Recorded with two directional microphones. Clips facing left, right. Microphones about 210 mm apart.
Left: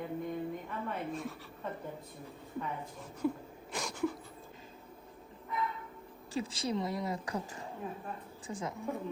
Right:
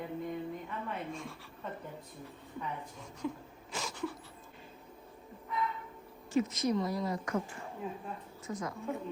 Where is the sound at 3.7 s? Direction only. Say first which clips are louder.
Left 3 dB; centre (ahead or behind).